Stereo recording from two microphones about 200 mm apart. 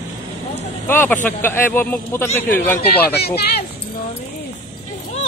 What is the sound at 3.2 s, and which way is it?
Speech, 55° left (ahead or behind).